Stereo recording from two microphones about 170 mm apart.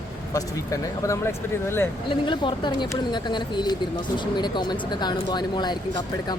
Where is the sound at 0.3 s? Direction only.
20° left (ahead or behind).